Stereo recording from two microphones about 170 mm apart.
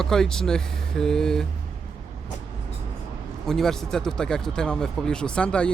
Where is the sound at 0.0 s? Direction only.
5° left (ahead or behind).